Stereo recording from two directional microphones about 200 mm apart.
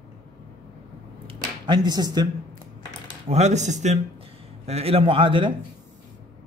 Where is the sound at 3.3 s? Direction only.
35° right (ahead or behind).